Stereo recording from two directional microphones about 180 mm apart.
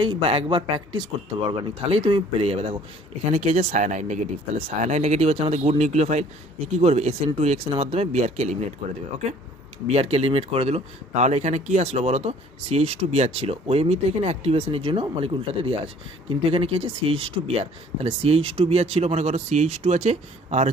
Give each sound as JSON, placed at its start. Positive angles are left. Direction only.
{"t": 0.0, "sound": "speech", "side_deg": -30}
{"t": 9.8, "sound": "speech", "side_deg": -35}